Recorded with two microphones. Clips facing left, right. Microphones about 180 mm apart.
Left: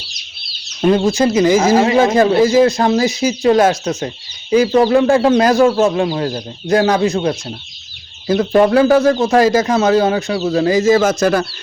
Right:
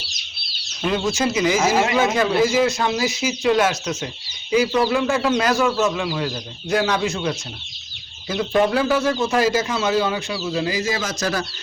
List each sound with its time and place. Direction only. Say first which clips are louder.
0.8 s speech: left 8 dB; 45° left (ahead or behind)
1.7 s speech: left 7 dB; 35° left (ahead or behind)
8.3 s speech: left 7 dB; 50° left (ahead or behind)